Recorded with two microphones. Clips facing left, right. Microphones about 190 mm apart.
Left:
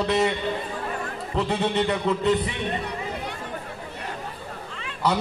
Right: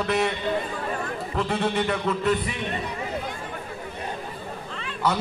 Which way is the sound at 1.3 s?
20° left (ahead or behind).